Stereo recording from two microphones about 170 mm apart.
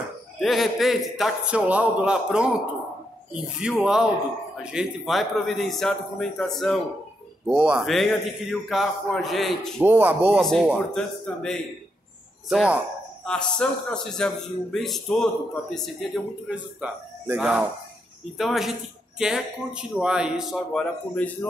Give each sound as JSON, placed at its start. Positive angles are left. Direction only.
{"t": 0.4, "sound": "speech", "side_deg": 0}
{"t": 3.6, "sound": "speech", "side_deg": -5}
{"t": 9.8, "sound": "speech", "side_deg": -10}
{"t": 10.4, "sound": "speech", "side_deg": 0}
{"t": 13.2, "sound": "speech", "side_deg": 5}